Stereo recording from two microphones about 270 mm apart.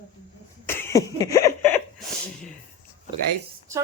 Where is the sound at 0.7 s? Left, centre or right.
Centre.